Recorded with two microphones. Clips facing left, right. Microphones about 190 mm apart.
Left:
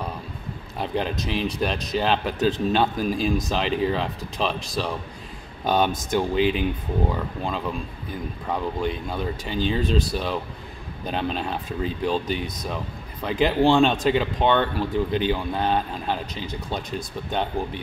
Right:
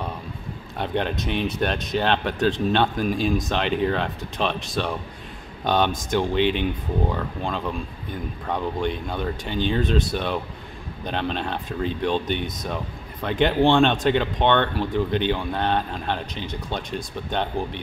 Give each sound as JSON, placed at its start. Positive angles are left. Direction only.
{"t": 0.7, "sound": "speech", "side_deg": 0}